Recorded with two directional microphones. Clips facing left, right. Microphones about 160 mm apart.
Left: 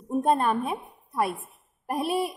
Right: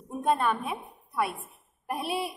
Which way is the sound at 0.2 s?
40° left (ahead or behind).